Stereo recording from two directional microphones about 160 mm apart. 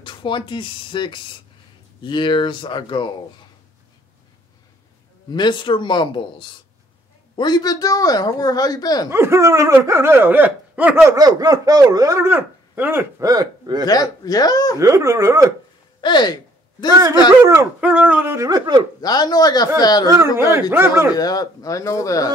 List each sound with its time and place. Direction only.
0.0 s speech: 30° left (ahead or behind)
5.3 s speech: 30° left (ahead or behind)
9.1 s speech: 15° right (ahead or behind)
13.2 s speech: 25° right (ahead or behind)
13.8 s speech: 25° left (ahead or behind)
14.8 s speech: 20° right (ahead or behind)
16.0 s speech: 30° left (ahead or behind)
17.4 s speech: 15° right (ahead or behind)
18.9 s speech: 25° left (ahead or behind)
20.3 s speech: 15° right (ahead or behind)
21.1 s speech: 25° left (ahead or behind)